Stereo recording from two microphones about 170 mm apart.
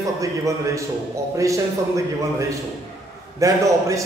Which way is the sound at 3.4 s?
20° right (ahead or behind).